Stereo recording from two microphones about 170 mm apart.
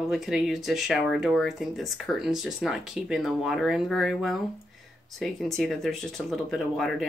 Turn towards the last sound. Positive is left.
turn(degrees=0)  # may be behind; listen again after turning